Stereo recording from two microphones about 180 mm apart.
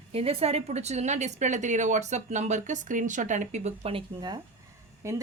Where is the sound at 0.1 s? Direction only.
35° right (ahead or behind).